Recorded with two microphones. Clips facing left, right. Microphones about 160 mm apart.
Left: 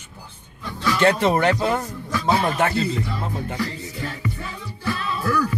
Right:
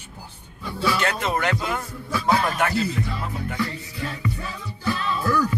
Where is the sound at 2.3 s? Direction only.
25° left (ahead or behind).